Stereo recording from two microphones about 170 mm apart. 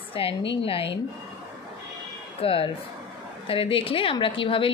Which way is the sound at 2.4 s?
35° left (ahead or behind).